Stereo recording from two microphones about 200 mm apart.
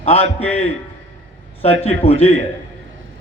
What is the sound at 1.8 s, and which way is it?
Speech, 30° left (ahead or behind).